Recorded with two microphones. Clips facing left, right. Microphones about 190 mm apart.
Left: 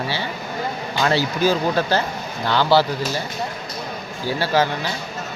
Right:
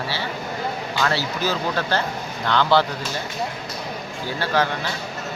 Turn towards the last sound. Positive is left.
turn(degrees=10)  # may be behind; listen again after turning